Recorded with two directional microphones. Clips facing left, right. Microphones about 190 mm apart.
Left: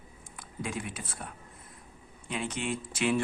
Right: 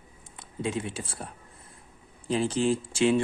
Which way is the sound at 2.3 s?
35° right (ahead or behind).